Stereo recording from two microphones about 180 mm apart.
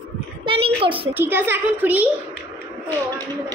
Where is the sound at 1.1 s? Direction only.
10° right (ahead or behind).